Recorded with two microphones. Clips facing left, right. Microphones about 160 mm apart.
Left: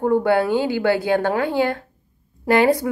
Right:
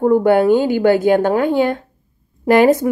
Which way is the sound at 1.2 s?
20° right (ahead or behind).